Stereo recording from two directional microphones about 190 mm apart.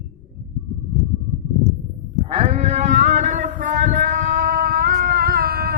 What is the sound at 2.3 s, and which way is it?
Sheep, 30° right (ahead or behind).